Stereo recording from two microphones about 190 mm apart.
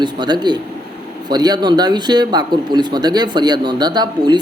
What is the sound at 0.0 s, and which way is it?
Speech, 25° right (ahead or behind).